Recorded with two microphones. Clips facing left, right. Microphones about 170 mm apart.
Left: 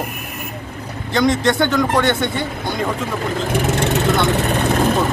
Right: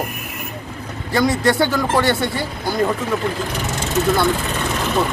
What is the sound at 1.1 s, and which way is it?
Speech, 5° right (ahead or behind).